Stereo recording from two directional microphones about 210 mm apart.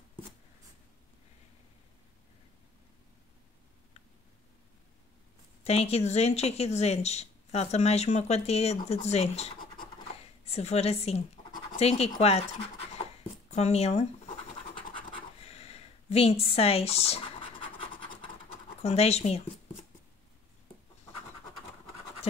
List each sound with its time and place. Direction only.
5.6 s speech: 30° left (ahead or behind)
13.5 s speech: 30° left (ahead or behind)
15.0 s a sound: 25° left (ahead or behind)
18.8 s speech: 30° left (ahead or behind)